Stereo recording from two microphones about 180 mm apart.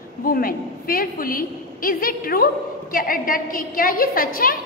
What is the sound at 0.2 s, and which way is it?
A woman's voice, 55° left (ahead or behind).